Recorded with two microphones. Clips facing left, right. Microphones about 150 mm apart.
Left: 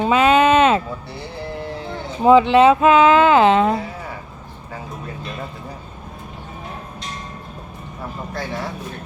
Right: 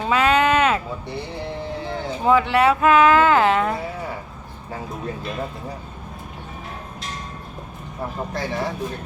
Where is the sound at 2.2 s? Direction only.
20° left (ahead or behind).